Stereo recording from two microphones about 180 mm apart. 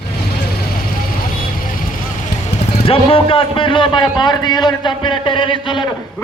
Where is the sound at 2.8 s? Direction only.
30° left (ahead or behind).